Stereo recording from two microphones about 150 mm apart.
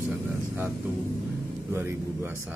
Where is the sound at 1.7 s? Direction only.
15° right (ahead or behind).